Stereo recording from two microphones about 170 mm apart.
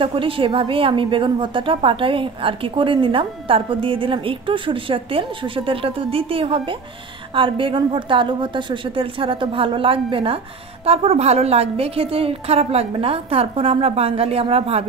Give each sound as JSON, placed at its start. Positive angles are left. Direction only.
{"t": 0.0, "sound": "a woman's voice", "side_deg": -30}